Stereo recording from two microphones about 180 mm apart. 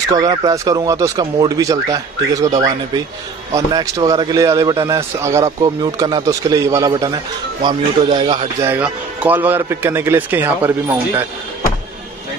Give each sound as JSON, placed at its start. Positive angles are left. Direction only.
{"t": 0.1, "sound": "a man's voice", "side_deg": -20}
{"t": 8.6, "sound": "speech", "side_deg": -10}